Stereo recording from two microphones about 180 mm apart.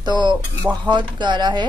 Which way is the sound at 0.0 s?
25° right (ahead or behind).